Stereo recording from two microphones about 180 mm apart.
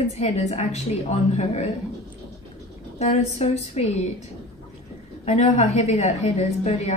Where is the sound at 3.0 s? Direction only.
35° left (ahead or behind).